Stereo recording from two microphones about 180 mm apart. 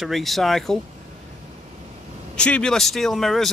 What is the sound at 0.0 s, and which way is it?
Speech, centre (ahead or behind).